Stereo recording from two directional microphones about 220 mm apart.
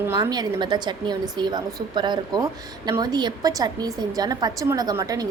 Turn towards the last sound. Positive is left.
turn(degrees=-15)  # may be behind; listen again after turning